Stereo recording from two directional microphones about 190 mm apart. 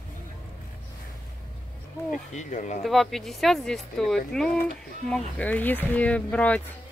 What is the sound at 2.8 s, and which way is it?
Speech, centre (ahead or behind).